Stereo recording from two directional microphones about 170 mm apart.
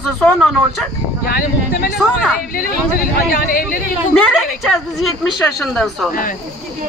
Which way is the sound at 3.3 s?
55° left (ahead or behind).